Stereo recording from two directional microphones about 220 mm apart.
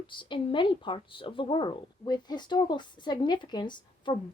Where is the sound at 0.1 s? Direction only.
20° left (ahead or behind).